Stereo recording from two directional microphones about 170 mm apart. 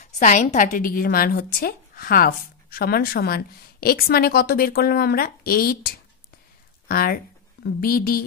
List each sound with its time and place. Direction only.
0.0 s a woman's voice: 45° left (ahead or behind); by 8.2 s 60° left (ahead or behind)